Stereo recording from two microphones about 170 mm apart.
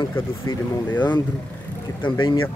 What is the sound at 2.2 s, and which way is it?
Speech, 30° left (ahead or behind).